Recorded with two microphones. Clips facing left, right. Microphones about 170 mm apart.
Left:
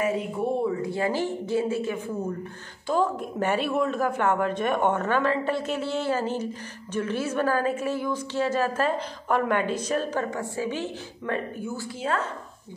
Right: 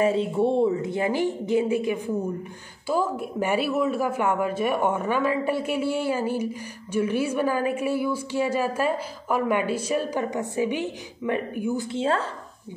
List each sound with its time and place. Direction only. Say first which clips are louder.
0.0 s speech: right 5 dB; 25° right (ahead or behind)